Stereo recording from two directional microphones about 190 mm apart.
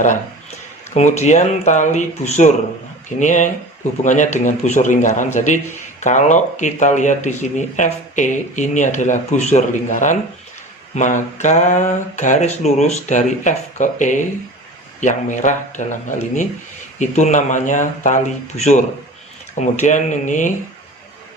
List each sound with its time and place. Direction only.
0.9 s speech: 35° left (ahead or behind)